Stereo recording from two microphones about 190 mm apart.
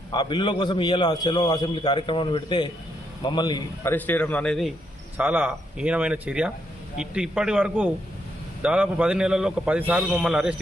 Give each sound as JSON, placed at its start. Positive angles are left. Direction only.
{"t": 0.1, "sound": "a man's voice", "side_deg": 20}
{"t": 3.9, "sound": "speech", "side_deg": 10}
{"t": 5.1, "sound": "a man's voice", "side_deg": -10}